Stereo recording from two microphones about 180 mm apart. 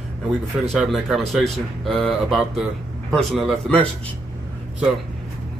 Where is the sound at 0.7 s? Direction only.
Centre (ahead or behind).